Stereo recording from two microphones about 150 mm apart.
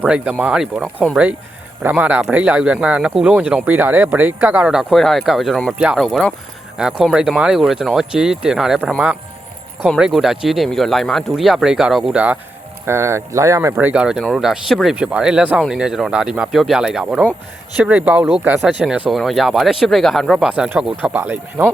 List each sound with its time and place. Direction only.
0.0 s speech: 10° right (ahead or behind)
6.0 s speech: 5° left (ahead or behind); by 13.7 s 20° right (ahead or behind)
13.7 s speech: 5° right (ahead or behind)